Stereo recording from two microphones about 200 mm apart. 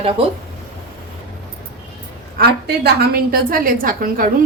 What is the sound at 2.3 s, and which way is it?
A woman's voice, 50° right (ahead or behind).